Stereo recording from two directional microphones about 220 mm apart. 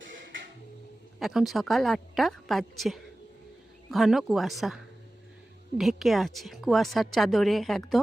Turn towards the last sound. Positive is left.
turn(degrees=0)  # may be behind; listen again after turning